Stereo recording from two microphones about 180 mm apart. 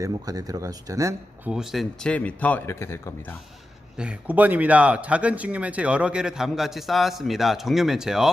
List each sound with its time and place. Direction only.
0.0 s speech: 20° right (ahead or behind)
1.5 s a man's voice: 5° right (ahead or behind); by 3.3 s 15° left (ahead or behind)
3.9 s speech: 5° right (ahead or behind)